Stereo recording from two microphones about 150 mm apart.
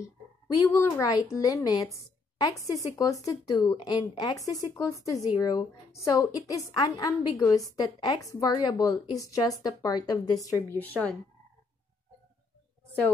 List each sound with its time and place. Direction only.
0.6 s a woman's voice: 20° left (ahead or behind)
10.8 s speech: 10° left (ahead or behind)